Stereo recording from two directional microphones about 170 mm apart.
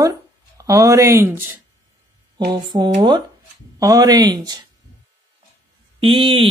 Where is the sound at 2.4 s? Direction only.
25° right (ahead or behind).